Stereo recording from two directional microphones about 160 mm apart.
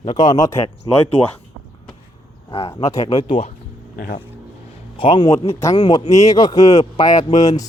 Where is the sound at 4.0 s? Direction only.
65° left (ahead or behind).